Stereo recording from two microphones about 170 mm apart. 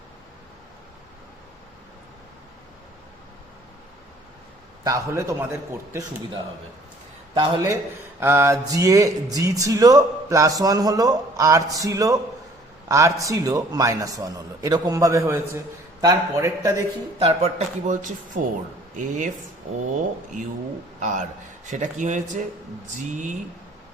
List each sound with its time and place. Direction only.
4.8 s a man's voice: 20° right (ahead or behind)
7.3 s speech: 30° right (ahead or behind)
8.2 s speech: 15° right (ahead or behind)
17.2 s speech: 40° right (ahead or behind)
21.0 s speech: 45° right (ahead or behind)